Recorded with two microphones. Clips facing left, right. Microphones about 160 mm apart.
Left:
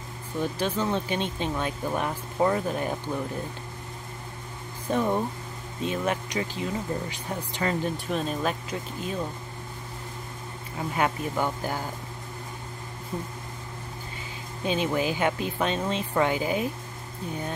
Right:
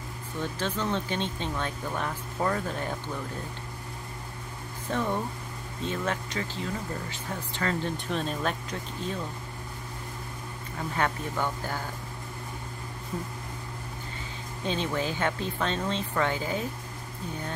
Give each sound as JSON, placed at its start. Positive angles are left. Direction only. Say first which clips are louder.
{"t": 0.4, "sound": "speech", "louder": "left 4 dB", "side_deg": 10}
{"t": 4.8, "sound": "speech", "louder": "left 4 dB", "side_deg": 15}
{"t": 8.1, "sound": "speech", "louder": "left 2 dB", "side_deg": 5}
{"t": 11.0, "sound": "speech", "louder": "left 3 dB", "side_deg": 15}
{"t": 14.6, "sound": "speech", "louder": "left 4 dB", "side_deg": 10}